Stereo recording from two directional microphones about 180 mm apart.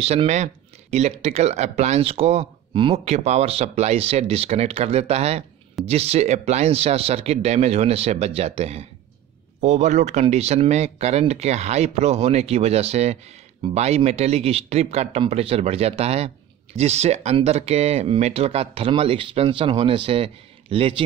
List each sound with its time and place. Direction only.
0.0 s speech: 35° right (ahead or behind)